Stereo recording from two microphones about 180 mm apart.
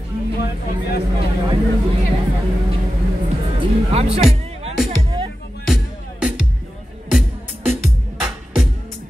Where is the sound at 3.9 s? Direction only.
35° right (ahead or behind).